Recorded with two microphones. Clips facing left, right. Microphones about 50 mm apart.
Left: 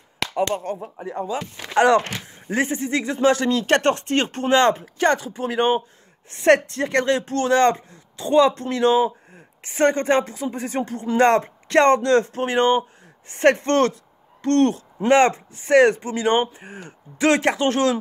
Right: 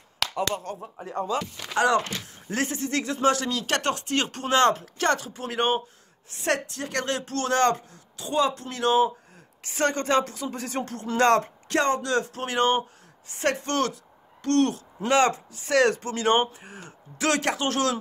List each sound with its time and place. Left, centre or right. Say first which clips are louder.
0.2 s speech: left 5 dB; left
0.9 s speech: right 3 dB; centre
1.8 s speech: left 6 dB; left
2.1 s speech: left 5 dB; left
6.3 s speech: left 10 dB; left
11.7 s speech: left 8 dB; left
13.3 s speech: left 9 dB; left